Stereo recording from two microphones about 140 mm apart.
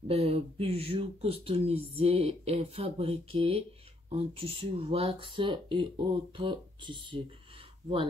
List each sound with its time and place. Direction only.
0.1 s speech: 45° right (ahead or behind)